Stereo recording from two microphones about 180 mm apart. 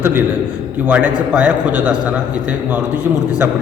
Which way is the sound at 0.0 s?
10° right (ahead or behind).